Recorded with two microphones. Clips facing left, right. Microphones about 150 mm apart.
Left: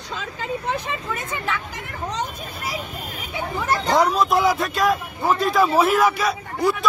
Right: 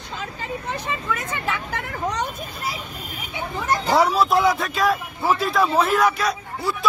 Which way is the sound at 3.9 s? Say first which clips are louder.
Even; 5° right (ahead or behind).